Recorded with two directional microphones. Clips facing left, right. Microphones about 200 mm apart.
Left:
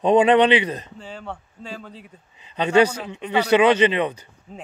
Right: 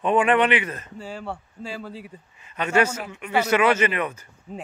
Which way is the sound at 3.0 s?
30° left (ahead or behind).